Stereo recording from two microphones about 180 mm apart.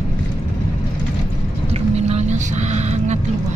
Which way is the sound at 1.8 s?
40° right (ahead or behind).